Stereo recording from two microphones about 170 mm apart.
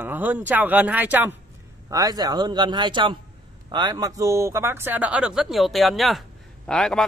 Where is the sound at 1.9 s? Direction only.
20° right (ahead or behind).